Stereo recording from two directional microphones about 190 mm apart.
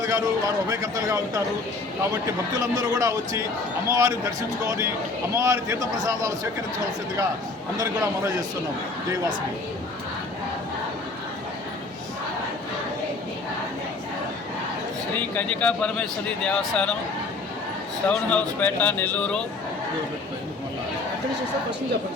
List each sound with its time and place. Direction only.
0.0 s speech: 20° right (ahead or behind)
2.6 s speech: 20° right (ahead or behind)
7.8 s a man's voice: 20° right (ahead or behind)
15.1 s speech: 10° left (ahead or behind)
18.1 s speech: 10° left (ahead or behind)